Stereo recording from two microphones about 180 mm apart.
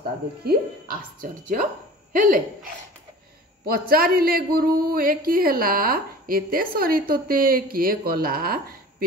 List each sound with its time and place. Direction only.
0.5 s a man's voice: 55° right (ahead or behind)